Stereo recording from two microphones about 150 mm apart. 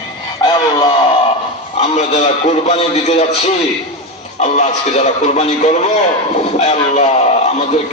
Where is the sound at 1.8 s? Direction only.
45° left (ahead or behind).